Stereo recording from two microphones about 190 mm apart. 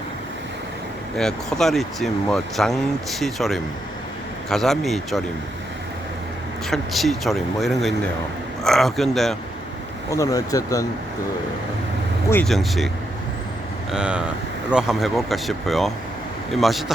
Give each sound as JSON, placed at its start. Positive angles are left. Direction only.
{"t": 1.1, "sound": "speech", "side_deg": 0}
{"t": 6.7, "sound": "speech", "side_deg": 0}
{"t": 10.1, "sound": "speech", "side_deg": 15}
{"t": 12.3, "sound": "speech", "side_deg": 5}
{"t": 13.9, "sound": "speech", "side_deg": -5}